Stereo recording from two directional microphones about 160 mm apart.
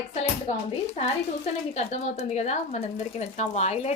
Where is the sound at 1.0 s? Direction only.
40° left (ahead or behind).